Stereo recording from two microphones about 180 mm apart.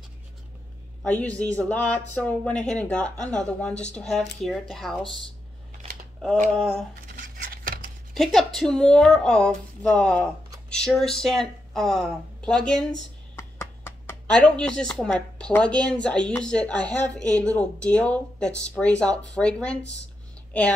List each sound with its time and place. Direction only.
1.0 s speech: 5° left (ahead or behind)
6.5 s speech: centre (ahead or behind)
7.1 s a sound: 50° right (ahead or behind)
8.1 s speech: centre (ahead or behind)
13.4 s a sound: 15° left (ahead or behind)
14.2 s speech: 5° left (ahead or behind)